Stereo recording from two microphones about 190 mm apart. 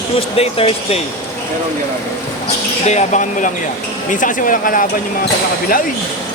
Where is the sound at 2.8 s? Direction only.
40° left (ahead or behind).